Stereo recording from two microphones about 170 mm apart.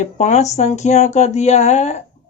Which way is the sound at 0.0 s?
45° left (ahead or behind).